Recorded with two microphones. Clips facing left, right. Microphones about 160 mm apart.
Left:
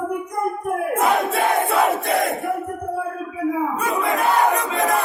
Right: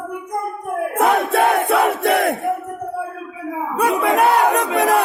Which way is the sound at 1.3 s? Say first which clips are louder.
Right 3 dB; 60° right (ahead or behind).